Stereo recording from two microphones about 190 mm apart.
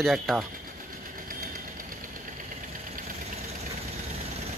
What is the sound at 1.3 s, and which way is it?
Engine, 50° right (ahead or behind).